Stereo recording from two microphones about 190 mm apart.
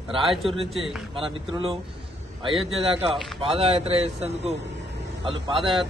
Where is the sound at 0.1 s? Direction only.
25° right (ahead or behind).